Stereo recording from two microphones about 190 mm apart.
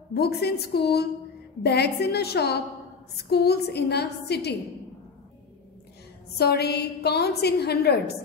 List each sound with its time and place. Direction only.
0.1 s a woman's voice: 60° left (ahead or behind)
6.3 s a woman's voice: 55° left (ahead or behind)